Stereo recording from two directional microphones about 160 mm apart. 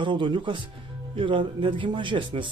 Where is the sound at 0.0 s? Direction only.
30° right (ahead or behind).